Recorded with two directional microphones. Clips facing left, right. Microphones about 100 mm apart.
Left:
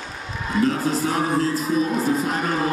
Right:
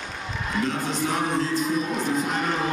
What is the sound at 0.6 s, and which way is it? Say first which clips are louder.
Speech: left 5 dB; 40° left (ahead or behind).